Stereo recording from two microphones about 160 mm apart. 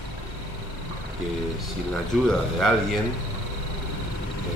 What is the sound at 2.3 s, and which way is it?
Speech, 5° left (ahead or behind).